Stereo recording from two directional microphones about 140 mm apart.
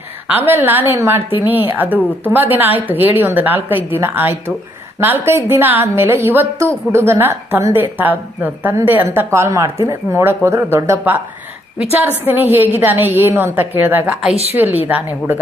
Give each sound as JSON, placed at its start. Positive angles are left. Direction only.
{"t": 0.3, "sound": "a woman's voice", "side_deg": -15}